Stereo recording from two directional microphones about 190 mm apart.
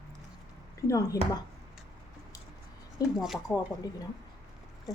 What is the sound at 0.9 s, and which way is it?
Speech, 15° left (ahead or behind).